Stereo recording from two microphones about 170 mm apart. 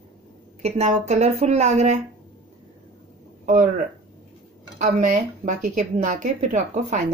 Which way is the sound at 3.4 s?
50° right (ahead or behind).